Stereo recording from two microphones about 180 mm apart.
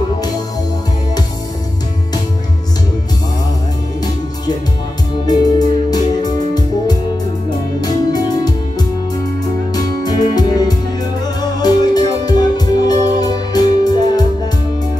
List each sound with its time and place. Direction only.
5.2 s music: 20° left (ahead or behind)
7.8 s music: 20° left (ahead or behind)